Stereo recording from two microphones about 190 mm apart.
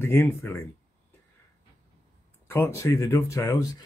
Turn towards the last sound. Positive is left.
turn(degrees=20)  # may be behind; listen again after turning